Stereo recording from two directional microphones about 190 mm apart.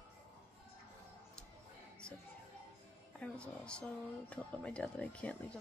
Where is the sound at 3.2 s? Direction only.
5° left (ahead or behind).